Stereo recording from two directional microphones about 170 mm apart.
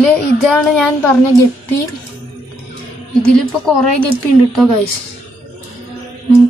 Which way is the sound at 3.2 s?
5° left (ahead or behind).